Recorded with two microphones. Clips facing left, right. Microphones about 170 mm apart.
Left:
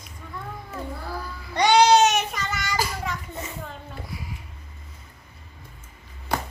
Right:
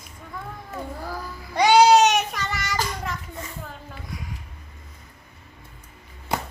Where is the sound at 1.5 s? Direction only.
5° right (ahead or behind).